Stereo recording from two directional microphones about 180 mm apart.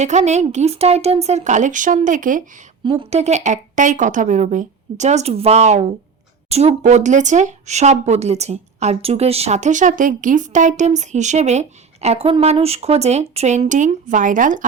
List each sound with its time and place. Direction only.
0.0 s speech: 40° right (ahead or behind)
2.8 s speech: 35° right (ahead or behind)